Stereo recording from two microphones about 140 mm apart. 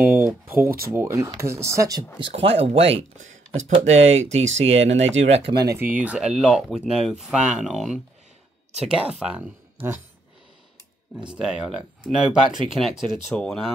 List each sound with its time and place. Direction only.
0.0 s a sound: 15° right (ahead or behind)
0.7 s speech: 90° right
0.9 s speech: 20° right (ahead or behind)
2.1 s speech: 40° right (ahead or behind)
5.5 s speech: 30° right (ahead or behind)
5.8 s speech: 10° right (ahead or behind)
11.1 s speech: 5° right (ahead or behind)